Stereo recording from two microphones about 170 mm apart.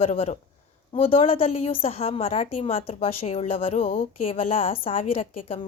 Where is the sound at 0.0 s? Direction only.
40° left (ahead or behind).